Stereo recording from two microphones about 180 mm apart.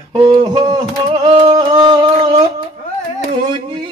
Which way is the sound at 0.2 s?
30° right (ahead or behind).